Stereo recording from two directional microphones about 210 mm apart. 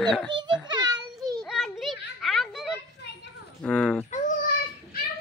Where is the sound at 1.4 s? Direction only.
Centre (ahead or behind).